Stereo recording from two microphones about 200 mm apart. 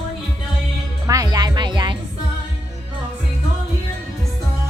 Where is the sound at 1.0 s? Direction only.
15° right (ahead or behind).